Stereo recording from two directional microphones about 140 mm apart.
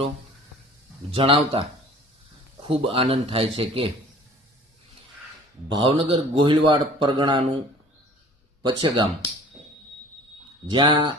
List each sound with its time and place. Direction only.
1.1 s a man's voice: 40° right (ahead or behind)
5.6 s a man's voice: 35° right (ahead or behind)
8.6 s a man's voice: 35° right (ahead or behind)
10.7 s a man's voice: 35° right (ahead or behind)